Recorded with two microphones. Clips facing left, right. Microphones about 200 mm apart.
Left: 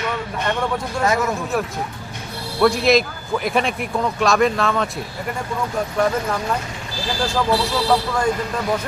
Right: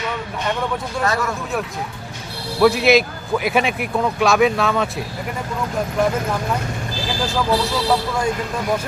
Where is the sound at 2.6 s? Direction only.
5° right (ahead or behind).